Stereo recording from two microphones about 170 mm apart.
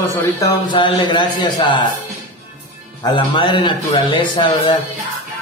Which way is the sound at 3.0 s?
30° left (ahead or behind).